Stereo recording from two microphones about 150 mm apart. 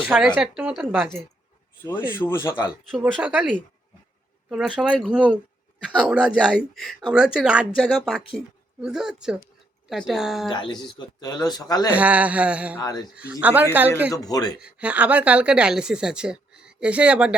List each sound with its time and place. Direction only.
0.0 s a woman's voice: centre (ahead or behind)
1.8 s speech: 15° left (ahead or behind)
3.0 s a woman's voice: 10° right (ahead or behind)
4.4 s a woman's voice: 5° right (ahead or behind)
10.5 s speech: 30° left (ahead or behind)
11.9 s a woman's voice: 10° right (ahead or behind)
12.8 s speech: 25° left (ahead or behind)
13.1 s a woman's voice: 10° right (ahead or behind)
14.1 s speech: 25° left (ahead or behind)
14.6 s a woman's voice: 10° right (ahead or behind)